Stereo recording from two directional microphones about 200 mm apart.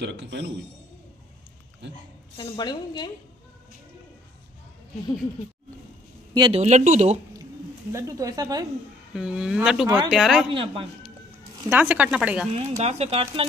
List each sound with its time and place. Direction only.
0.0 s speech: 60° right (ahead or behind)
1.8 s speech: 60° right (ahead or behind)
2.3 s a woman's voice: 20° left (ahead or behind)
6.3 s speech: 20° right (ahead or behind)
6.6 s speech: 35° right (ahead or behind)
7.9 s speech: 15° right (ahead or behind)
9.1 s speech: 5° right (ahead or behind)
9.8 s speech: 25° right (ahead or behind)
10.1 s speech: centre (ahead or behind)
10.5 s speech: 25° right (ahead or behind)
11.7 s speech: 10° right (ahead or behind)
12.5 s speech: 30° right (ahead or behind)